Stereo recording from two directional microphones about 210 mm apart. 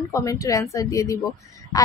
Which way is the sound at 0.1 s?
15° left (ahead or behind).